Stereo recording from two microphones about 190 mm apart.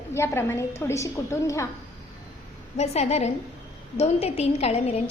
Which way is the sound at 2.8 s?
35° left (ahead or behind).